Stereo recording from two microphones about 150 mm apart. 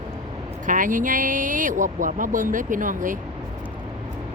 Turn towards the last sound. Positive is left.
turn(degrees=-60)  # may be behind; listen again after turning